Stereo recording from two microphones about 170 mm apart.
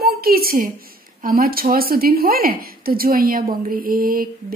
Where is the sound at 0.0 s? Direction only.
65° right (ahead or behind).